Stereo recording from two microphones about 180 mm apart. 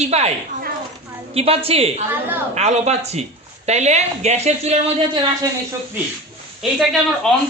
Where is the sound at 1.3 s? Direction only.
35° right (ahead or behind).